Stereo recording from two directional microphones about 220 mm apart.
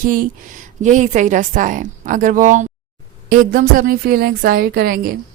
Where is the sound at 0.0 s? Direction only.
40° right (ahead or behind).